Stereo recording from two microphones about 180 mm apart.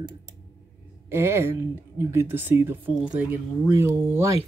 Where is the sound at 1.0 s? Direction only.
15° right (ahead or behind).